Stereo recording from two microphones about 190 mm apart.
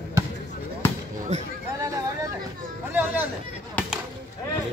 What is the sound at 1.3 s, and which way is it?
Speech, 35° right (ahead or behind).